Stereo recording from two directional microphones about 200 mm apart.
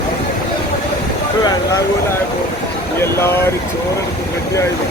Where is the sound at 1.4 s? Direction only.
20° left (ahead or behind).